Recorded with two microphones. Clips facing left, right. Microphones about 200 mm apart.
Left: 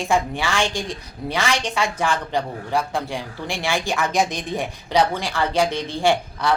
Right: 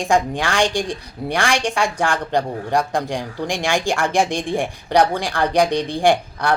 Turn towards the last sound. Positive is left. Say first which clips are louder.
# right 3 dB
turn(degrees=-15)  # may be behind; listen again after turning